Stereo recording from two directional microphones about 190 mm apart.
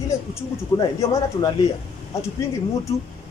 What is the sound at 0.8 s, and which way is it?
Speech, 20° left (ahead or behind).